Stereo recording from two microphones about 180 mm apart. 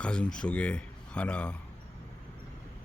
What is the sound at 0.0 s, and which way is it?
Speech, 5° left (ahead or behind).